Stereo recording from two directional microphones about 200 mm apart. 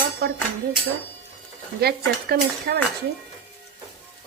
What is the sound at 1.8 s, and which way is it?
Speech, 50° right (ahead or behind).